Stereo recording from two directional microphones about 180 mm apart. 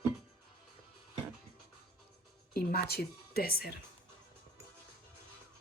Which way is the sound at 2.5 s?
60° left (ahead or behind).